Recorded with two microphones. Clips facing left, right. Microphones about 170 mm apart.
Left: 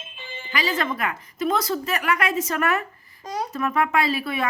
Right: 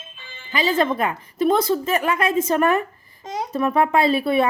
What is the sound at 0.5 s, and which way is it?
A woman's voice, 25° right (ahead or behind).